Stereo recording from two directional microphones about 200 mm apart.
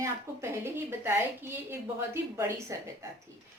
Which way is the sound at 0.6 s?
10° right (ahead or behind).